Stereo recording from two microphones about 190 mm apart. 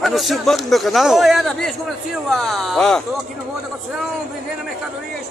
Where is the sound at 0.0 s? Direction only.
Centre (ahead or behind).